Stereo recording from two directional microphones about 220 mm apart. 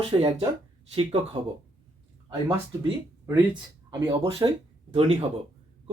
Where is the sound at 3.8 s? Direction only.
25° right (ahead or behind).